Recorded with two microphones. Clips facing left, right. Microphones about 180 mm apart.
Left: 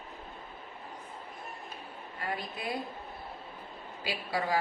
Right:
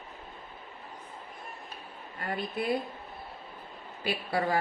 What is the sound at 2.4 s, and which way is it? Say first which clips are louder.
Speech: right 6 dB; 60° right (ahead or behind).